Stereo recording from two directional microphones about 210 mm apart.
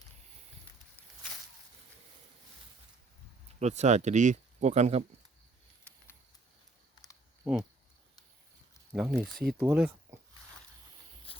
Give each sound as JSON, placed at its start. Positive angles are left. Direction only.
{"t": 3.6, "sound": "speech", "side_deg": -35}
{"t": 8.9, "sound": "speech", "side_deg": -5}
{"t": 11.3, "sound": "a sound", "side_deg": 25}